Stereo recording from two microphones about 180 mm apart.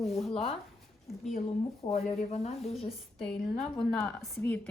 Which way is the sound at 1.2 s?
35° left (ahead or behind).